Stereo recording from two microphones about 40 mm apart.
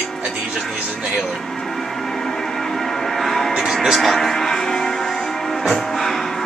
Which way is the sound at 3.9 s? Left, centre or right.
Centre.